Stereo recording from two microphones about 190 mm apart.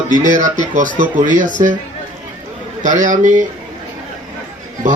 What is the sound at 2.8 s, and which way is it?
Speech, 40° right (ahead or behind).